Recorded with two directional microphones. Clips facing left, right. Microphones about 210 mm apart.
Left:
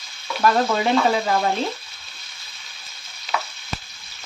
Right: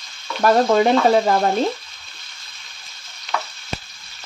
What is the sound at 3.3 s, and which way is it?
Frying, 5° left (ahead or behind).